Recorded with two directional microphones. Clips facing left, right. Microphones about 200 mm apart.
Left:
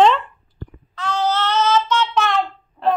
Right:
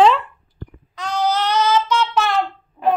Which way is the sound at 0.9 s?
15° right (ahead or behind).